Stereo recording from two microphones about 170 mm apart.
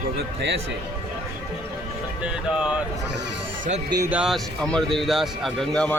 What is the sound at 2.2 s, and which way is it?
Speech, 5° right (ahead or behind).